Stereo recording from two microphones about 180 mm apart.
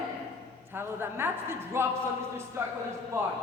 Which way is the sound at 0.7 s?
15° right (ahead or behind).